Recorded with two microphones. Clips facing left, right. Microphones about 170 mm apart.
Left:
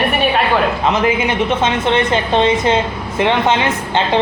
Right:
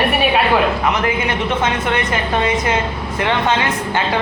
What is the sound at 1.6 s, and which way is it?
A man's voice, 25° left (ahead or behind).